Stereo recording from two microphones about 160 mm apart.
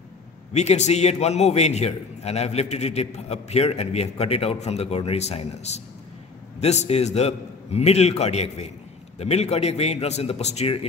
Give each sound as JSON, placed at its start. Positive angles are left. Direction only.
{"t": 0.5, "sound": "a man's voice", "side_deg": 45}